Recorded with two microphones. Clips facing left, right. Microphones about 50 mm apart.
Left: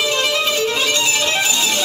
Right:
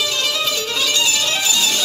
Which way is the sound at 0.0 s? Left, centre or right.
Left.